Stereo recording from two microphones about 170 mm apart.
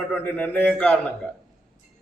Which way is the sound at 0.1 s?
10° left (ahead or behind).